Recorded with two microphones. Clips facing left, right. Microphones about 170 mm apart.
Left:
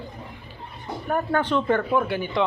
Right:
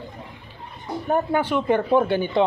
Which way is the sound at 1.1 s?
10° right (ahead or behind).